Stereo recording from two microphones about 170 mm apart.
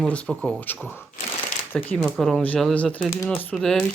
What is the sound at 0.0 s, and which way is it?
Speech, 5° left (ahead or behind).